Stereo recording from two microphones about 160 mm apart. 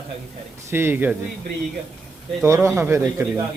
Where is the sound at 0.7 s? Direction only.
15° right (ahead or behind).